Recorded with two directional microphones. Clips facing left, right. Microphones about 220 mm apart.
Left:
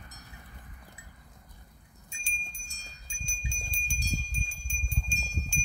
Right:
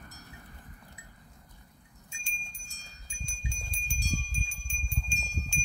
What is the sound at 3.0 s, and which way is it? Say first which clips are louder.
Wind chime: right 1 dB; 30° left (ahead or behind).